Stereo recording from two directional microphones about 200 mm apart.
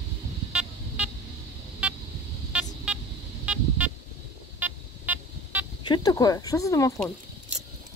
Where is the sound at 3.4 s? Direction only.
5° right (ahead or behind).